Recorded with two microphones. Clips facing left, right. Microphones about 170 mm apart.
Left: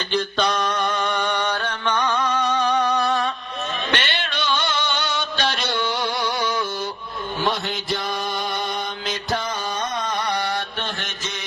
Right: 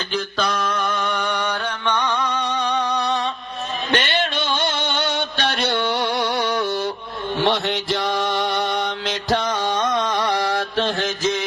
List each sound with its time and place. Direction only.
0.1 s a sound: 5° right (ahead or behind)
1.9 s music: 10° left (ahead or behind)
2.9 s music: 20° right (ahead or behind)
3.9 s a sound: 45° right (ahead or behind); by 6.7 s 65° right (ahead or behind)
7.4 s music: 90° right
9.0 s mantra: 85° right